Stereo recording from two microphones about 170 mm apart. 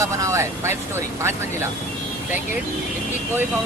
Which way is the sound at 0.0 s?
20° right (ahead or behind).